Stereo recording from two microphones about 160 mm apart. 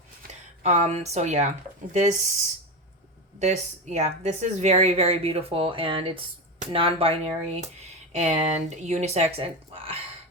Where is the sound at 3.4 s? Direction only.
45° right (ahead or behind).